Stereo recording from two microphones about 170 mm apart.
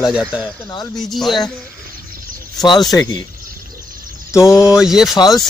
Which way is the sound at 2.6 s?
25° left (ahead or behind).